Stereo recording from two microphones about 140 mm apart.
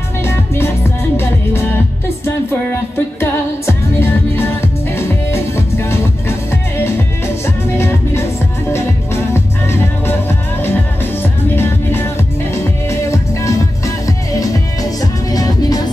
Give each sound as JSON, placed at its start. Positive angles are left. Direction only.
{"t": 0.2, "sound": "music", "side_deg": 20}
{"t": 3.2, "sound": "music", "side_deg": 15}
{"t": 7.4, "sound": "music", "side_deg": 20}